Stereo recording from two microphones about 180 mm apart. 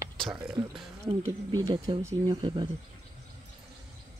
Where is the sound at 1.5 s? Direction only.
20° right (ahead or behind).